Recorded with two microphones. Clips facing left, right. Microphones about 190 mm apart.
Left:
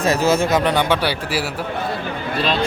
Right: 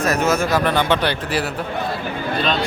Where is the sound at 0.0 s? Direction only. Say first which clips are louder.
Left 2 dB; 30° left (ahead or behind).